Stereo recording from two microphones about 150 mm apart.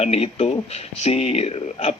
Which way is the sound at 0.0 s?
40° left (ahead or behind).